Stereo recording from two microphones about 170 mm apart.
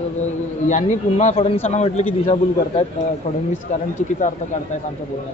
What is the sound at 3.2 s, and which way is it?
Speech, 55° left (ahead or behind).